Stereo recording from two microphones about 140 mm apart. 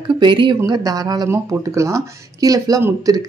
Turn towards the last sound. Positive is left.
turn(degrees=-25)  # may be behind; listen again after turning